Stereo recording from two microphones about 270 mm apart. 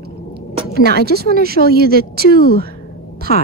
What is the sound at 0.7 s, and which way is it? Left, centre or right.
Speech, right.